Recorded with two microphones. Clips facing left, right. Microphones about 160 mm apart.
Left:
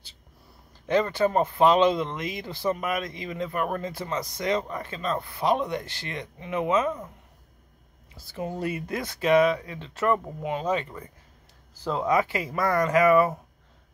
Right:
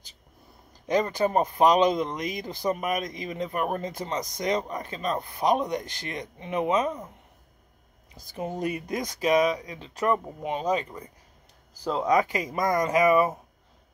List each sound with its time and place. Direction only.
0.8 s speech: 15° right (ahead or behind)
8.1 s speech: 15° right (ahead or behind)